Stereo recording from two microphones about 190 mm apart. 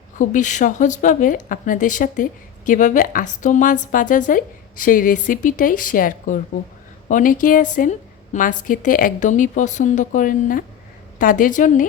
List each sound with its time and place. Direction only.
0.2 s speech: 40° left (ahead or behind)